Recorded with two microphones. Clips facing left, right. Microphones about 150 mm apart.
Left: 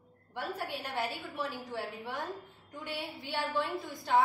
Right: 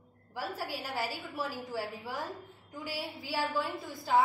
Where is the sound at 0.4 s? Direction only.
5° right (ahead or behind).